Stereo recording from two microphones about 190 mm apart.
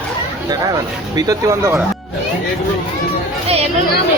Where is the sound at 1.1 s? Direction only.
15° right (ahead or behind).